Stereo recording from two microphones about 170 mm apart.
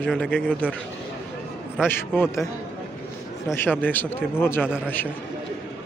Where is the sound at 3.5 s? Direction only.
10° left (ahead or behind).